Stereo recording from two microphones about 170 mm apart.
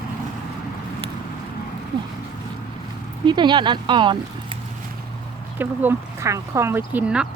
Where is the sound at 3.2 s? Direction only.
25° right (ahead or behind).